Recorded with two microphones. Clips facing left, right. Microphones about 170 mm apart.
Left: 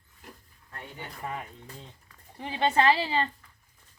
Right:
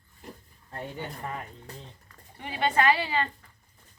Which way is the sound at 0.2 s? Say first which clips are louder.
Right 5 dB; 35° right (ahead or behind).